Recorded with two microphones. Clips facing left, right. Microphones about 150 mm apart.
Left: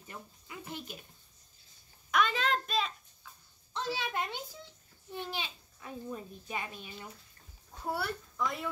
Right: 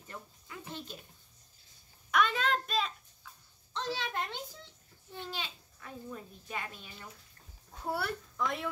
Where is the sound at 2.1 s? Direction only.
Centre (ahead or behind).